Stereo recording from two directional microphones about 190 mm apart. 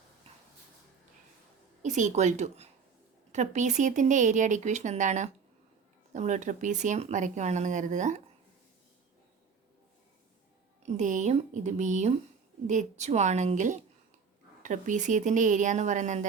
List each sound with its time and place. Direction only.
1.8 s speech: 40° right (ahead or behind)
10.8 s speech: 40° right (ahead or behind)